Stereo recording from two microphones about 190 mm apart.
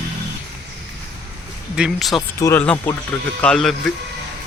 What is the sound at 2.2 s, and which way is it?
A man's voice, 15° left (ahead or behind).